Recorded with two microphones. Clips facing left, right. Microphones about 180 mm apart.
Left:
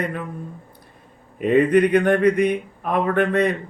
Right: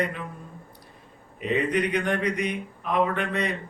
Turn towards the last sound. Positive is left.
turn(degrees=50)  # may be behind; listen again after turning